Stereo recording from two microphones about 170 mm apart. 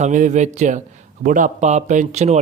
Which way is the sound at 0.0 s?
45° right (ahead or behind).